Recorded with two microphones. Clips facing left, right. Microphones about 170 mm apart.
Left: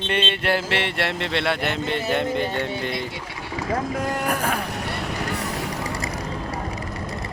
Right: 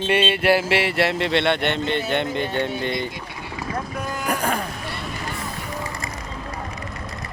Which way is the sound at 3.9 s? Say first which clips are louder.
Left 4 dB; 80° left.